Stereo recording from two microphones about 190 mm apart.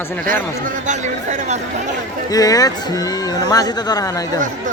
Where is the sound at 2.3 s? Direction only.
20° left (ahead or behind).